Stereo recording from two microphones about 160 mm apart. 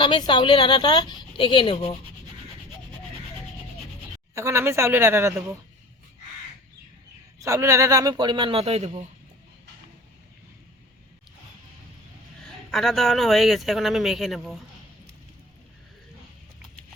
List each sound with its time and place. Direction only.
0.0 s speech: 30° left (ahead or behind)
4.4 s speech: 15° right (ahead or behind)
7.4 s a man's voice: 20° right (ahead or behind); by 9.0 s 40° right (ahead or behind)
12.4 s a man's voice: centre (ahead or behind)